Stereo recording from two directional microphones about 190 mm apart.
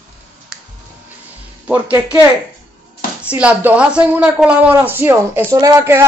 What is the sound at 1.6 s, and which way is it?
Speech, 5° right (ahead or behind).